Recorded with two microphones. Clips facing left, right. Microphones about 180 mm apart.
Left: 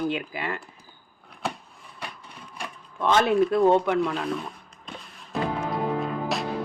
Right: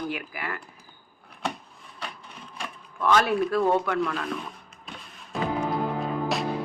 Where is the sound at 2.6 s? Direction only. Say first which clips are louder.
Left 1 dB; 20° left (ahead or behind).